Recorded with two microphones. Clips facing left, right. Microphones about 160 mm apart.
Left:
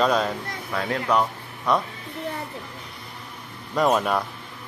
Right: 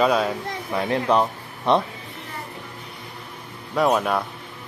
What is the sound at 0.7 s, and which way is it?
Speech, 20° right (ahead or behind).